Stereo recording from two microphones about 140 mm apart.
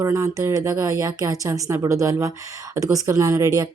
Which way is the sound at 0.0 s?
25° right (ahead or behind).